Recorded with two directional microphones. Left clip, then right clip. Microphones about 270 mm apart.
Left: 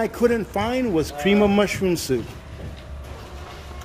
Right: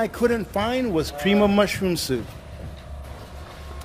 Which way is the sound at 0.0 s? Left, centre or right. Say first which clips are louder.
Left 2 dB; centre.